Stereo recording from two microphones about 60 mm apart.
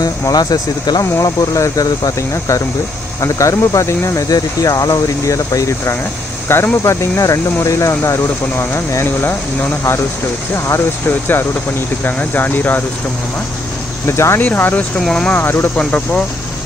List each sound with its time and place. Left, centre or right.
0.0 s speech: left
1.2 s speech: left
3.2 s speech: left
4.3 s speech: left
6.5 s speech: left
8.0 s speech: left
14.0 s speech: left
14.4 s speech: left
15.0 s speech: centre
15.3 s speech: left
15.7 s speech: centre